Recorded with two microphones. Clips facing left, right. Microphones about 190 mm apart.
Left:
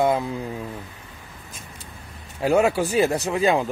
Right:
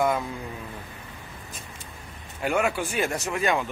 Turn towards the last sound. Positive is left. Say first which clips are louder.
# left 5 dB
turn(degrees=30)  # may be behind; listen again after turning